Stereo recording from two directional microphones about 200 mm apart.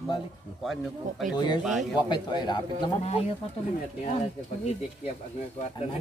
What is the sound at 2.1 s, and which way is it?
Speech, 20° left (ahead or behind).